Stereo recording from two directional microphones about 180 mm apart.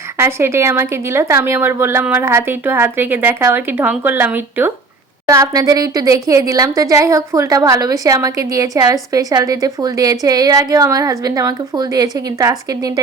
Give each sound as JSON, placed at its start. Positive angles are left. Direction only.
{"t": 0.2, "sound": "a woman's voice", "side_deg": -15}